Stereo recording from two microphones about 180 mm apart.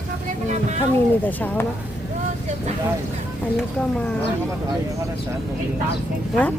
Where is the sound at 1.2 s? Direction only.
10° left (ahead or behind).